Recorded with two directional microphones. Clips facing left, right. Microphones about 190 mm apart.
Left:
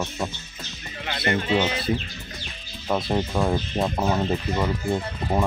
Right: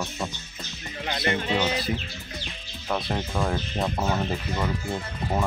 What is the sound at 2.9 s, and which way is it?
Speech, 15° left (ahead or behind).